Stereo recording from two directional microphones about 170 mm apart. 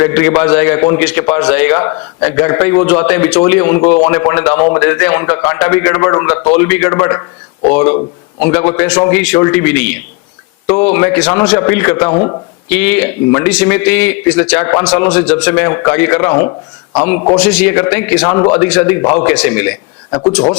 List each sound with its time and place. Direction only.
0.0 s a man's voice: 10° left (ahead or behind)
15.2 s a man's voice: 5° left (ahead or behind)
16.4 s speech: 25° left (ahead or behind)
17.3 s a man's voice: 5° left (ahead or behind)
18.2 s a man's voice: 20° left (ahead or behind)
18.5 s a man's voice: 10° left (ahead or behind)
20.1 s speech: 25° left (ahead or behind)